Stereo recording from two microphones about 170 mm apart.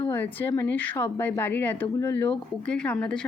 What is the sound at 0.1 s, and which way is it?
A woman's voice, 10° left (ahead or behind).